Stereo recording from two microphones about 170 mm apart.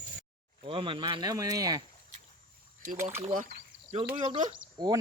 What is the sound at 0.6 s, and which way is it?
Speech, 30° right (ahead or behind).